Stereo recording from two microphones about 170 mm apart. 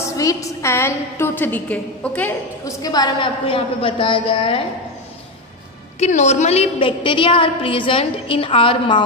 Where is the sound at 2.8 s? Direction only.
25° left (ahead or behind).